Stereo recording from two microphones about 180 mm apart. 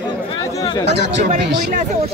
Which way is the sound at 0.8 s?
70° right (ahead or behind).